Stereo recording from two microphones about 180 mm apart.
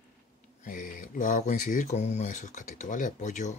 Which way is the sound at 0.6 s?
45° left (ahead or behind).